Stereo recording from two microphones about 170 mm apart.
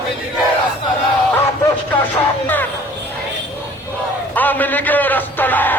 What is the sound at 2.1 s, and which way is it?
Music, 10° left (ahead or behind).